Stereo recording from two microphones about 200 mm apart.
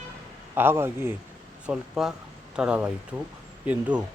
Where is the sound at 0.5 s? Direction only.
10° right (ahead or behind).